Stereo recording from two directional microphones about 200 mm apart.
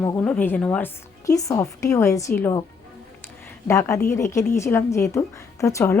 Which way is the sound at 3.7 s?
15° left (ahead or behind).